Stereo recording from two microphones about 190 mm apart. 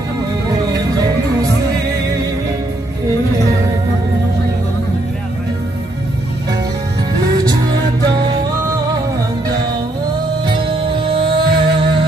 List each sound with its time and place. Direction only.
0.5 s music: 20° right (ahead or behind)
10.4 s music: 25° right (ahead or behind)